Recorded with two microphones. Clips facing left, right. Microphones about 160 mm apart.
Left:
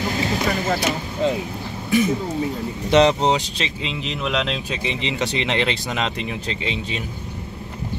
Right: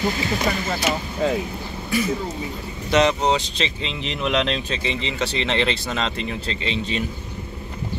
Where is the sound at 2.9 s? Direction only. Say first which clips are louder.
Left 3 dB; 30° left (ahead or behind).